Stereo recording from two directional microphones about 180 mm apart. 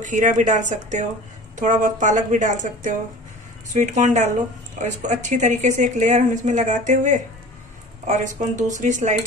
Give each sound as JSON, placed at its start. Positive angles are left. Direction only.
{"t": 0.0, "sound": "speech", "side_deg": -45}